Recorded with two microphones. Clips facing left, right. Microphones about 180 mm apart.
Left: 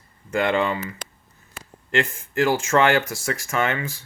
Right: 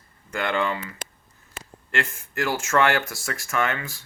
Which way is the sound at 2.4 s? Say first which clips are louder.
Left 3 dB; 15° left (ahead or behind).